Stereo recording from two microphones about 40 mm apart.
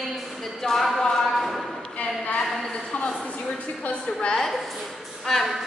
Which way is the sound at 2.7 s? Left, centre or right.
Left.